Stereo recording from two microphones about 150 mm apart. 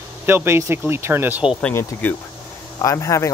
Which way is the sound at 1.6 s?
15° left (ahead or behind).